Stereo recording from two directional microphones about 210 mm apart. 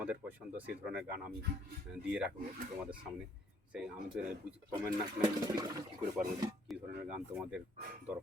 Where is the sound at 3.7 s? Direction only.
5° right (ahead or behind).